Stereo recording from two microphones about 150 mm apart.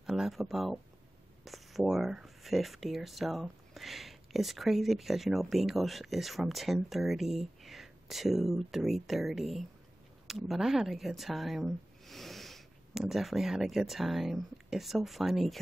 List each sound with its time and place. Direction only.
0.0 s speech: 5° right (ahead or behind)